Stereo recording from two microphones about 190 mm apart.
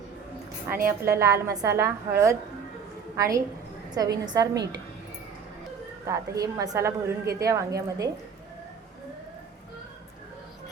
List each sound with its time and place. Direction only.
0.9 s a woman's voice: 15° right (ahead or behind)
6.1 s a woman's voice: 20° right (ahead or behind)